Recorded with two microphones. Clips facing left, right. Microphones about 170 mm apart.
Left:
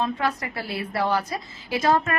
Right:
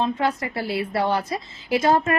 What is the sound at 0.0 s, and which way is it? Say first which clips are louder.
A woman's voice: right 3 dB; 25° right (ahead or behind).